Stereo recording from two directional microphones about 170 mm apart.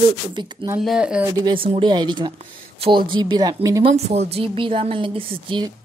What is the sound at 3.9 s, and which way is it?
A woman's voice, 40° right (ahead or behind).